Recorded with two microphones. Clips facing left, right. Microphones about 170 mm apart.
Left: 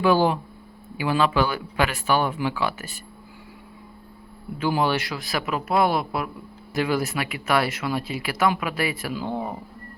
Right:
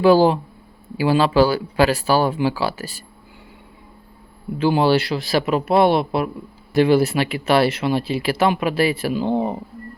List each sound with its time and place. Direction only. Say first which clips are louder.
0.0 s speech: right 6 dB; 35° right (ahead or behind)
4.5 s speech: right 6 dB; 30° right (ahead or behind)